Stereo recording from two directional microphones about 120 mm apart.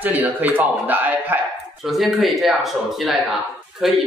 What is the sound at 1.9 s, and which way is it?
Speech, centre (ahead or behind).